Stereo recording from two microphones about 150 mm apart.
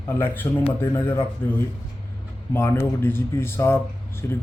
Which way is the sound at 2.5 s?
15° left (ahead or behind).